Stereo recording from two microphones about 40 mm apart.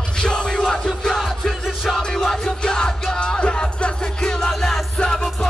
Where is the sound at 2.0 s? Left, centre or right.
Centre.